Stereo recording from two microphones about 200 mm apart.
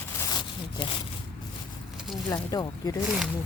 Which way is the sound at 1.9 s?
Centre (ahead or behind).